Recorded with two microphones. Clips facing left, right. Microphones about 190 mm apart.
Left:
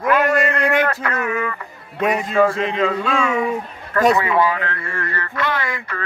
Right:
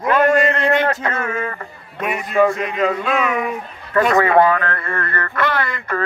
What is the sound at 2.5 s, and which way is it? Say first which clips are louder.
Speech: even; 30° left (ahead or behind).